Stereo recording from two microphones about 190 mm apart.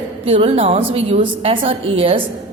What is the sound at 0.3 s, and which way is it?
A woman's voice, 30° right (ahead or behind).